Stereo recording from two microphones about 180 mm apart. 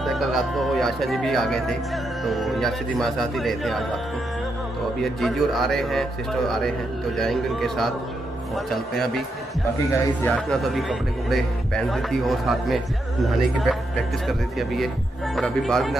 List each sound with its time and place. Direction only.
0.0 s speech: centre (ahead or behind)
5.0 s speech: centre (ahead or behind)
10.2 s speech: centre (ahead or behind)